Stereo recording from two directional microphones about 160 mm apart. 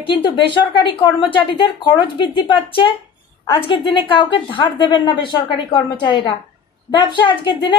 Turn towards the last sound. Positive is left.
turn(degrees=30)  # may be behind; listen again after turning